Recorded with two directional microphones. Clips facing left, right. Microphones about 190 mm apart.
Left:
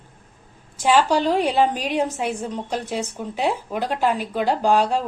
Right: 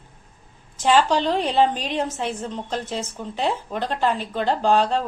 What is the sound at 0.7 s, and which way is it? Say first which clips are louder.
A woman's voice: left 1 dB; 10° left (ahead or behind).